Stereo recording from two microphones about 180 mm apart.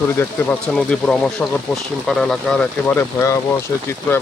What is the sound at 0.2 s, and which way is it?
Speech, 15° left (ahead or behind).